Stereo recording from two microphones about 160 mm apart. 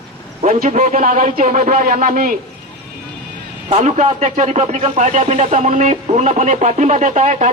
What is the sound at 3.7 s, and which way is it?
Speech, 45° right (ahead or behind).